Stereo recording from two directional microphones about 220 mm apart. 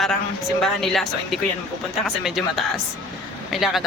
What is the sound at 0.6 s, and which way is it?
Speech, centre (ahead or behind).